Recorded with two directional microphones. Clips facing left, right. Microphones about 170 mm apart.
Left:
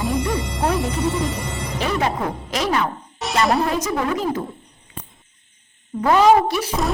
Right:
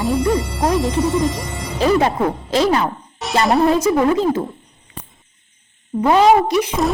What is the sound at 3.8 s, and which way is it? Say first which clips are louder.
Speech: right 7 dB; 25° right (ahead or behind).